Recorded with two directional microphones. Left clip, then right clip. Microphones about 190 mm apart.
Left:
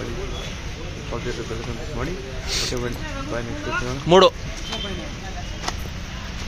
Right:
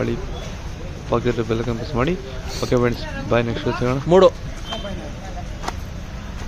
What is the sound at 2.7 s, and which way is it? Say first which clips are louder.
Speech: right 10 dB; 35° right (ahead or behind).